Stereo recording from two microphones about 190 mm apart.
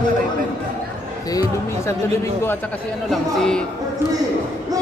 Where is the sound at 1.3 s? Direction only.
20° left (ahead or behind).